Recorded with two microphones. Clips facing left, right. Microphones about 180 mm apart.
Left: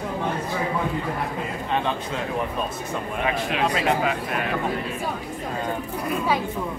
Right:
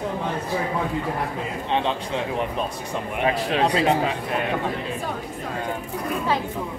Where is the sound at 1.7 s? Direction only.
20° right (ahead or behind).